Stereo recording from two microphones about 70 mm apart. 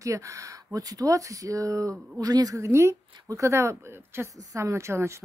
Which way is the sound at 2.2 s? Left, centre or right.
Right.